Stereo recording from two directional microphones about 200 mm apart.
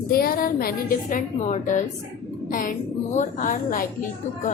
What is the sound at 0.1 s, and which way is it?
A woman's voice, 50° left (ahead or behind).